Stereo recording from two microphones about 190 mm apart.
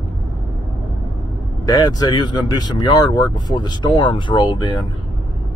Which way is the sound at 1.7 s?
20° left (ahead or behind).